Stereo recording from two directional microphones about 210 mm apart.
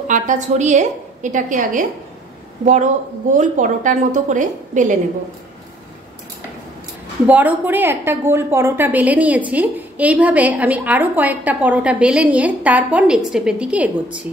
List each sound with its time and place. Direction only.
0.1 s a woman's voice: 35° right (ahead or behind)
7.2 s a woman's voice: 10° right (ahead or behind)